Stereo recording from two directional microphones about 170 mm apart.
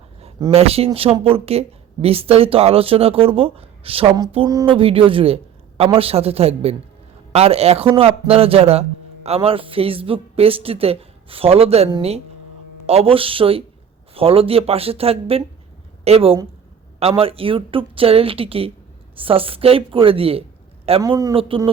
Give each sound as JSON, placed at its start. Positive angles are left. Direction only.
{"t": 0.5, "sound": "speech", "side_deg": -35}
{"t": 21.0, "sound": "a man's voice", "side_deg": -20}